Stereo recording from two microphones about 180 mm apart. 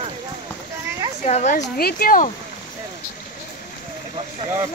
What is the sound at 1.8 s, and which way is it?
Speech, 55° left (ahead or behind).